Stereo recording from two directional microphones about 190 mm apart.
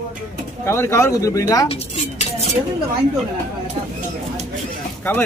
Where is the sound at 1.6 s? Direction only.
35° left (ahead or behind).